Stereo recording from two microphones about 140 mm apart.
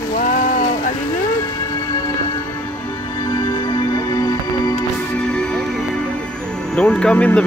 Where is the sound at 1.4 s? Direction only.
25° left (ahead or behind).